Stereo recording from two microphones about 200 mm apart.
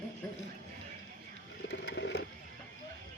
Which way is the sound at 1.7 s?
60° left (ahead or behind).